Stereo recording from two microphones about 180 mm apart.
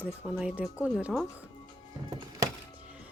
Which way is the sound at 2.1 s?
25° right (ahead or behind).